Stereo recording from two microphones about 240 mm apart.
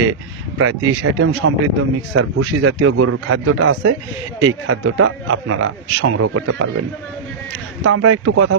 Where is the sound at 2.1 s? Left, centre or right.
Right.